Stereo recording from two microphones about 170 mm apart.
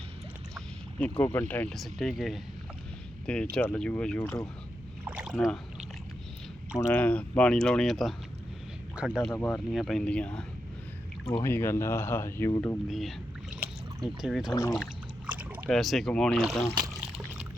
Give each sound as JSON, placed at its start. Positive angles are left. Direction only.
{"t": 0.5, "sound": "boat", "side_deg": 5}
{"t": 1.2, "sound": "speech", "side_deg": 10}
{"t": 3.5, "sound": "speech", "side_deg": 5}
{"t": 5.0, "sound": "rowboat", "side_deg": -5}
{"t": 5.3, "sound": "speech", "side_deg": 5}
{"t": 6.7, "sound": "speech", "side_deg": 10}
{"t": 9.2, "sound": "speech", "side_deg": 10}
{"t": 11.3, "sound": "speech", "side_deg": 15}
{"t": 12.9, "sound": "speech", "side_deg": 0}
{"t": 14.4, "sound": "speech", "side_deg": 20}
{"t": 15.3, "sound": "rowboat", "side_deg": -10}
{"t": 15.7, "sound": "speech", "side_deg": 0}